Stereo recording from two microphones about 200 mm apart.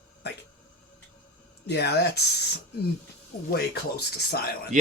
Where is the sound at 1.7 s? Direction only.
55° left (ahead or behind).